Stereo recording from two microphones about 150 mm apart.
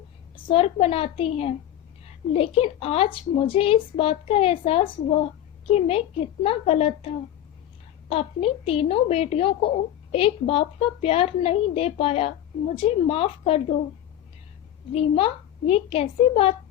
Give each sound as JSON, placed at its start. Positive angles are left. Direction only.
{"t": 0.4, "sound": "a woman's voice", "side_deg": 40}
{"t": 8.1, "sound": "a woman's voice", "side_deg": 40}
{"t": 14.9, "sound": "a woman's voice", "side_deg": 40}